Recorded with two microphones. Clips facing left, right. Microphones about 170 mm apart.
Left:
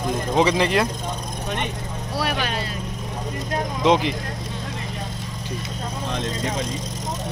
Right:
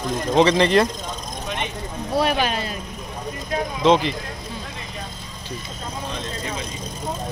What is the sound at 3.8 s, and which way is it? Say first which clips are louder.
Speech: right 1 dB; 15° left (ahead or behind).